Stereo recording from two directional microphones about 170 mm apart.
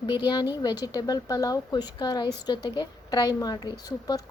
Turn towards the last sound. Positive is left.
turn(degrees=20)  # may be behind; listen again after turning